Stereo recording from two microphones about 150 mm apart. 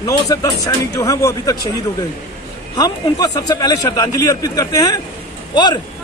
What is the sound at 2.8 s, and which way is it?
Speech, 25° left (ahead or behind).